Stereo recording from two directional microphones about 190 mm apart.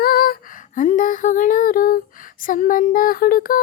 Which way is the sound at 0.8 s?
40° left (ahead or behind).